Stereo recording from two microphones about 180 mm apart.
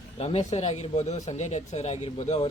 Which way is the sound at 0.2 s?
35° left (ahead or behind).